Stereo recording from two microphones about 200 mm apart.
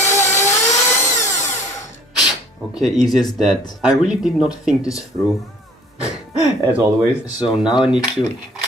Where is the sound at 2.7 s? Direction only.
Centre (ahead or behind).